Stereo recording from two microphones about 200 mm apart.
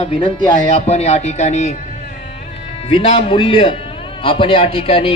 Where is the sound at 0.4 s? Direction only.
30° left (ahead or behind).